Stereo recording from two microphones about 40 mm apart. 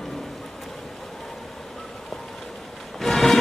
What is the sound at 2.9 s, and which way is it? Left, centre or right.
Music, centre.